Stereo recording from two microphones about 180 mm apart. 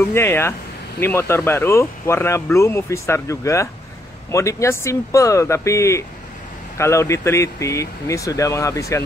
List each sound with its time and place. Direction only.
0.1 s speech: 15° left (ahead or behind)